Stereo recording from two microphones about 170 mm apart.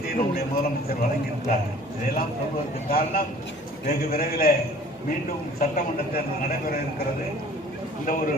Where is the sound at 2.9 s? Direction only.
60° left (ahead or behind).